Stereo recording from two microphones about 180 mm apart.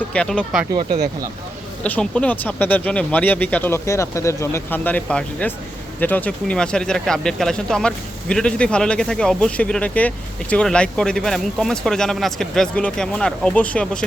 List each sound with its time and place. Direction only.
0.1 s speech: 5° left (ahead or behind)
0.7 s speech: 25° right (ahead or behind)
1.8 s speech: 5° left (ahead or behind)